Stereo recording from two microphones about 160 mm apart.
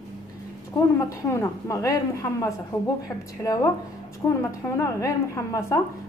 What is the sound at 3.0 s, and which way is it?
A man's voice, 20° left (ahead or behind).